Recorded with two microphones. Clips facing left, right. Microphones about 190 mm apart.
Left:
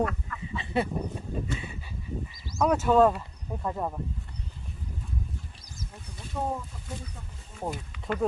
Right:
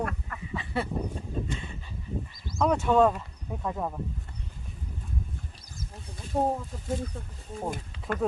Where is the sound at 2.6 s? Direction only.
5° left (ahead or behind).